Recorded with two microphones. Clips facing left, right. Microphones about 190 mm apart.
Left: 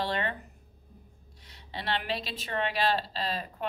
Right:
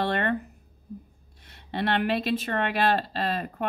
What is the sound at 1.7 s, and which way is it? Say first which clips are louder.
Speech: right 7 dB; 55° right (ahead or behind).